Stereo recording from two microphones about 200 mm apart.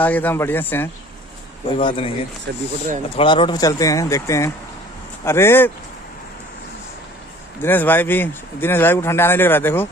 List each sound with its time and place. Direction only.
0.0 s speech: 10° left (ahead or behind)
1.8 s speech: 25° left (ahead or behind)
2.5 s speech: 60° right (ahead or behind)
3.2 s speech: 25° left (ahead or behind)
7.6 s speech: 10° left (ahead or behind)